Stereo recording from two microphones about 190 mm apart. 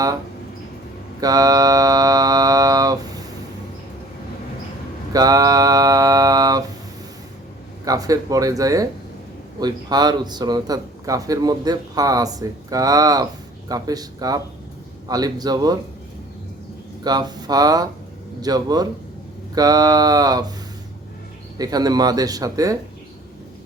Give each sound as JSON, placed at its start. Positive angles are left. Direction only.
{"t": 1.2, "sound": "mantra", "side_deg": -20}
{"t": 5.1, "sound": "a sound", "side_deg": -20}
{"t": 7.9, "sound": "a man's voice", "side_deg": -20}
{"t": 17.0, "sound": "a man's voice", "side_deg": -20}
{"t": 21.6, "sound": "a man's voice", "side_deg": -20}